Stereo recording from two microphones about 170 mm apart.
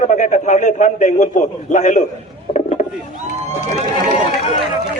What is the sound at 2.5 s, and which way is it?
Rowboat, 45° left (ahead or behind).